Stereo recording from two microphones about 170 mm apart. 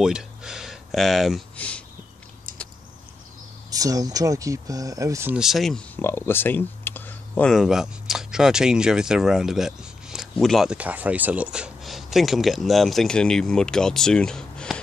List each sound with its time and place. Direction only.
0.0 s a sound: 5° right (ahead or behind)
3.7 s speech: 20° right (ahead or behind)
5.3 s speech: centre (ahead or behind)
5.9 s speech: 15° left (ahead or behind)